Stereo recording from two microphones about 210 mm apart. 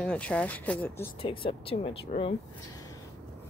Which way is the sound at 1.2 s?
25° left (ahead or behind).